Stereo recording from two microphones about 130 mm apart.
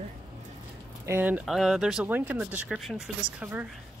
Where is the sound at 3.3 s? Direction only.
10° right (ahead or behind).